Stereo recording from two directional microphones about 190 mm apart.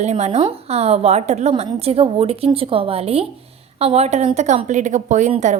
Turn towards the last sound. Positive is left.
turn(degrees=-40)  # may be behind; listen again after turning